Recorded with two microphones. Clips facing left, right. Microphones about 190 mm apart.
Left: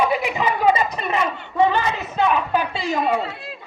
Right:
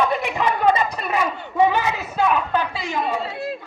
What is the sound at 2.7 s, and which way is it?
Speech, 30° left (ahead or behind).